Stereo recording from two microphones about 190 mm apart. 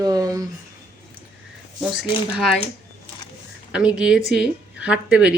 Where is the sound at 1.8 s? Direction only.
Centre (ahead or behind).